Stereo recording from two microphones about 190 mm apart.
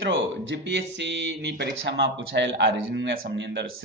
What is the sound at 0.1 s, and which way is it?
A man's voice, 70° right (ahead or behind).